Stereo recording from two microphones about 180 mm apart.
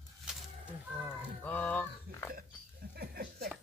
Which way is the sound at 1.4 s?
10° left (ahead or behind).